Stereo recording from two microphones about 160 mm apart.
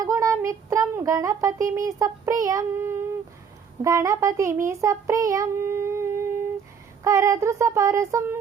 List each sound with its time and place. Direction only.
0.0 s child singing: 20° right (ahead or behind)
3.8 s a child's voice: 20° right (ahead or behind)
7.0 s a sound: 20° right (ahead or behind)